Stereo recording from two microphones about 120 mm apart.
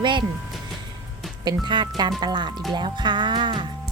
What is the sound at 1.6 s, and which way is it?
Speech, 40° right (ahead or behind).